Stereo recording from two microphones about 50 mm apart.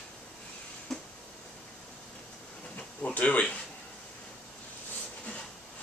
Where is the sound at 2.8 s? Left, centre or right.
Left.